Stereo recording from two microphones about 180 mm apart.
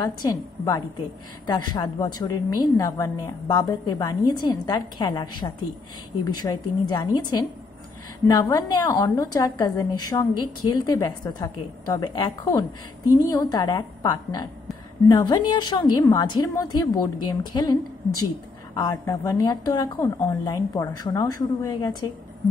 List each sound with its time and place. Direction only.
0.0 s a woman's voice: 20° left (ahead or behind)
15.0 s a woman's voice: 25° left (ahead or behind)